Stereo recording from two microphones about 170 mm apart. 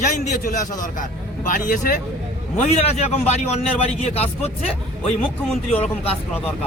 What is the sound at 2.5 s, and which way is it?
A man's voice, 40° left (ahead or behind).